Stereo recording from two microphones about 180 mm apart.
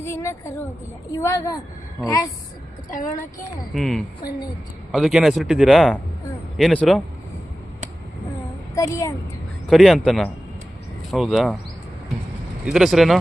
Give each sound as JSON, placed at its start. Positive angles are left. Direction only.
{"t": 0.0, "sound": "a sound", "side_deg": 15}
{"t": 1.1, "sound": "a woman's voice", "side_deg": 20}
{"t": 3.8, "sound": "speech", "side_deg": 5}
{"t": 8.7, "sound": "a woman's voice", "side_deg": 15}
{"t": 9.6, "sound": "speech", "side_deg": 0}
{"t": 12.6, "sound": "speech", "side_deg": 0}